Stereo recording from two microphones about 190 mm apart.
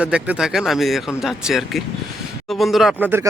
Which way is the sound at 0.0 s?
5° right (ahead or behind).